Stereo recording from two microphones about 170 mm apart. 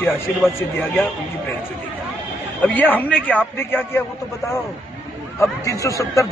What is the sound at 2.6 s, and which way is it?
A man's voice, 10° left (ahead or behind).